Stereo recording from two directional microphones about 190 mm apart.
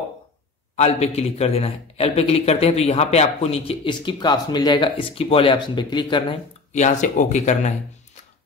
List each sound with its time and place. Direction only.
0.7 s a man's voice: 35° left (ahead or behind)
6.7 s a man's voice: 40° left (ahead or behind)